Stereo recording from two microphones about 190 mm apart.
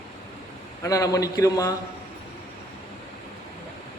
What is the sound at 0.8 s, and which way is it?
Speech, 20° left (ahead or behind).